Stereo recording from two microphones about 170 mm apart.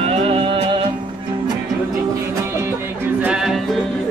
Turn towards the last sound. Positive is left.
turn(degrees=-5)  # may be behind; listen again after turning